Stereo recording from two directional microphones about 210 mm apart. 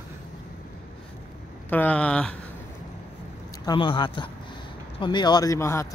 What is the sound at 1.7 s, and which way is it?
Speech, 5° left (ahead or behind).